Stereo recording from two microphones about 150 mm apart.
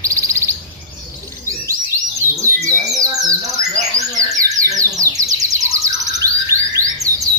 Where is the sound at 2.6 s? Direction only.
25° right (ahead or behind).